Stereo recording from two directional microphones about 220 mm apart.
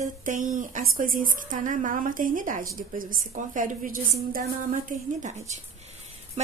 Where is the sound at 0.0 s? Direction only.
35° right (ahead or behind).